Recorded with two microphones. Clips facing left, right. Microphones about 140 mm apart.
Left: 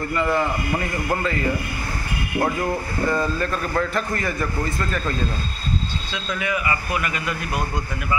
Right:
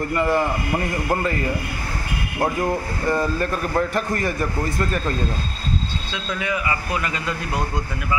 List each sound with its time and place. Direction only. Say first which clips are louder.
0.1 s a man's voice: right 1 dB; 15° right (ahead or behind)
2.4 s a man's voice: right 3 dB; 15° right (ahead or behind)